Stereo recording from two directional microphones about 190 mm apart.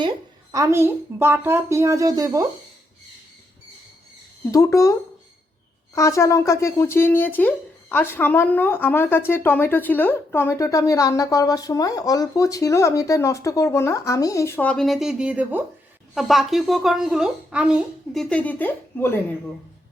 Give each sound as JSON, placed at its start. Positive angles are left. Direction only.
{"t": 0.5, "sound": "speech", "side_deg": -15}
{"t": 4.5, "sound": "speech", "side_deg": 15}